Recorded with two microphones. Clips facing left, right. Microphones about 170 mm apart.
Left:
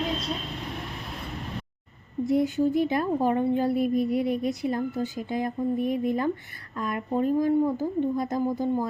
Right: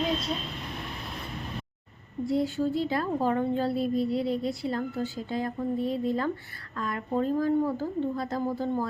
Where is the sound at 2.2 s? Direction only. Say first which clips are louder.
Left 4 dB; 20° left (ahead or behind).